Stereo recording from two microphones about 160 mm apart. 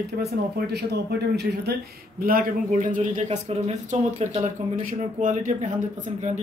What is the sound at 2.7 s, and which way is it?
Speech, 50° right (ahead or behind).